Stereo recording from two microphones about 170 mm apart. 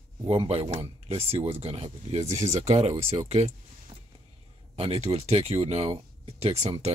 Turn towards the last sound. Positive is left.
turn(degrees=-35)  # may be behind; listen again after turning